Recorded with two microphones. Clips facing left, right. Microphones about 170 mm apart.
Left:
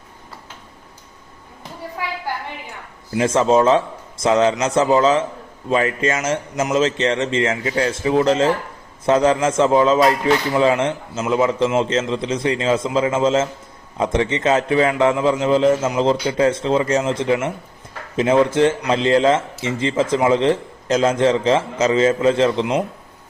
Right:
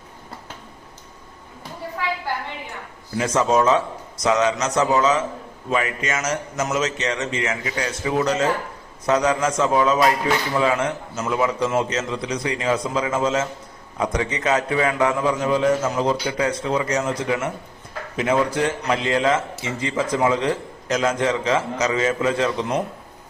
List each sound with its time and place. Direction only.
3.2 s speech: 25° left (ahead or behind)